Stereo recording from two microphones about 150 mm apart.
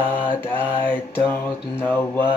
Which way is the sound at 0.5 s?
10° left (ahead or behind).